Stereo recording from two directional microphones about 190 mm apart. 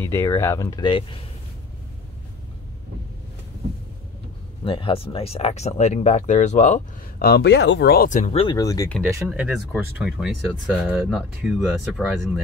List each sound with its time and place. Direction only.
0.0 s speech: 15° left (ahead or behind)
4.6 s speech: 25° left (ahead or behind)
7.2 s speech: 60° left (ahead or behind); by 8.5 s 30° left (ahead or behind)
8.5 s speech: 20° left (ahead or behind)
9.3 s speech: 5° right (ahead or behind)